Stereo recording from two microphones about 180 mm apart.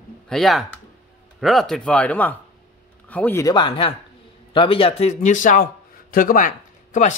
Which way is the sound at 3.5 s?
25° left (ahead or behind).